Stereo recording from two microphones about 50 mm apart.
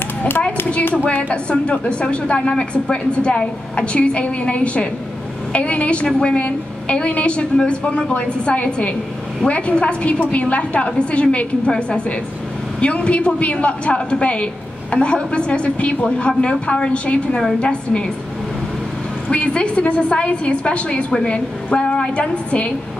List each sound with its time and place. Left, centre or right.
0.9 s a woman's voice: left
12.8 s a woman's voice: left
19.2 s a woman's voice: left